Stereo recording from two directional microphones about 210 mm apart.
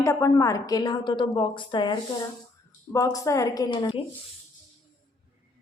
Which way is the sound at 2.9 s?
15° left (ahead or behind).